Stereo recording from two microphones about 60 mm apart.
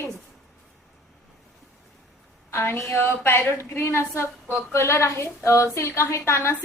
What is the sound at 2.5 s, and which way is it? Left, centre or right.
A woman's voice, left.